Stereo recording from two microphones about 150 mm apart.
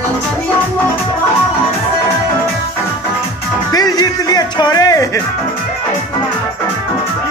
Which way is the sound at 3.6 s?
25° left (ahead or behind).